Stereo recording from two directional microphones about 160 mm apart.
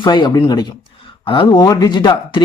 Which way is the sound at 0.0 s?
30° left (ahead or behind).